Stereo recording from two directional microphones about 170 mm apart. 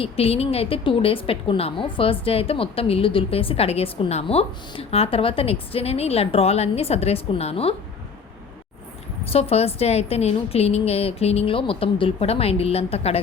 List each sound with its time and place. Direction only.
0.0 s a woman's voice: 35° left (ahead or behind)
9.2 s a woman's voice: 35° left (ahead or behind)